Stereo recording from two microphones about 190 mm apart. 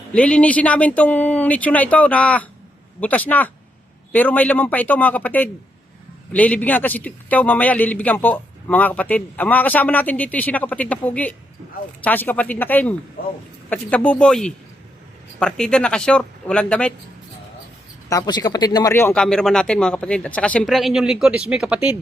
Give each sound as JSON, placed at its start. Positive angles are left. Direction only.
{"t": 0.1, "sound": "a man's voice", "side_deg": 5}
{"t": 18.1, "sound": "speech", "side_deg": 20}